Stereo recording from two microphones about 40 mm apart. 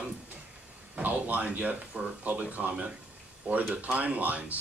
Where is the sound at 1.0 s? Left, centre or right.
Right.